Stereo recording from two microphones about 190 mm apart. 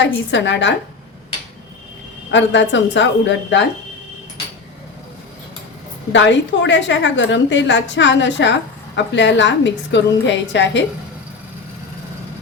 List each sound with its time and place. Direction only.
0.0 s a woman's voice: 70° left (ahead or behind)
2.3 s a woman's voice: 70° left (ahead or behind)
6.1 s a woman's voice: 70° left (ahead or behind)